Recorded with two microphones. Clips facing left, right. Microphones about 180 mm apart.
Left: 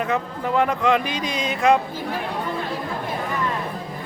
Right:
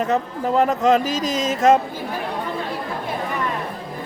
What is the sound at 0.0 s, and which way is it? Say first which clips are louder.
Speech: right 3 dB; 40° right (ahead or behind).